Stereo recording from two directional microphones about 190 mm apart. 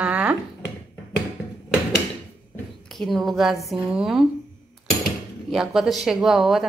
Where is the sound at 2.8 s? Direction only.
Centre (ahead or behind).